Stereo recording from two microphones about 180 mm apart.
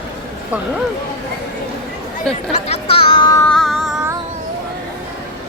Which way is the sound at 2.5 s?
35° left (ahead or behind).